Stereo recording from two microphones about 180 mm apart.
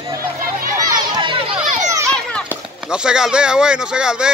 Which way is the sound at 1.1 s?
30° right (ahead or behind).